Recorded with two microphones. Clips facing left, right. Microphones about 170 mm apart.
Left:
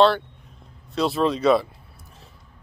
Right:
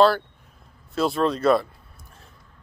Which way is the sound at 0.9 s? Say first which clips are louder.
Left 1 dB; centre (ahead or behind).